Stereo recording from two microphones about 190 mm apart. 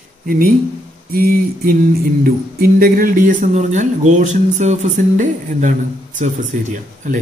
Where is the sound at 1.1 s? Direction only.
50° right (ahead or behind).